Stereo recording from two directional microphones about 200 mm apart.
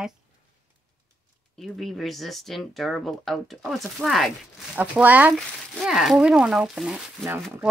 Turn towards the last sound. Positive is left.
turn(degrees=-5)  # may be behind; listen again after turning